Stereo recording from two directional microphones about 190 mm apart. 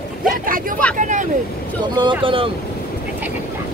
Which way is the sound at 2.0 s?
25° right (ahead or behind).